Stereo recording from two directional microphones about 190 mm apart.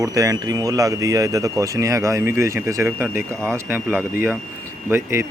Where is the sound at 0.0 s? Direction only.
20° right (ahead or behind).